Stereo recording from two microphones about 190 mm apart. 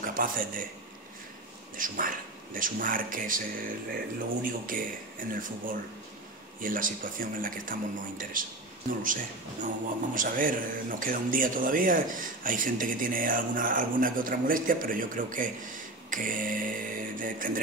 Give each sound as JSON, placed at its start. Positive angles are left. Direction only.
{"t": 0.0, "sound": "speech", "side_deg": -45}
{"t": 1.8, "sound": "speech", "side_deg": -45}